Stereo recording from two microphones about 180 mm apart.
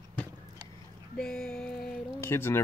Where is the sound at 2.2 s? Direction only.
15° left (ahead or behind).